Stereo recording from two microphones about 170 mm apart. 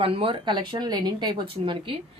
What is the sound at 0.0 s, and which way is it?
A woman's voice, 35° right (ahead or behind).